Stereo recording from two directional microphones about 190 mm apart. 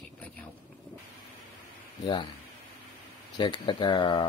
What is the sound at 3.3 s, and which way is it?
Speech, 25° left (ahead or behind).